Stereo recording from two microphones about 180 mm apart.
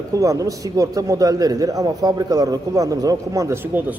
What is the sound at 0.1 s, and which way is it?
A man's voice, 20° right (ahead or behind).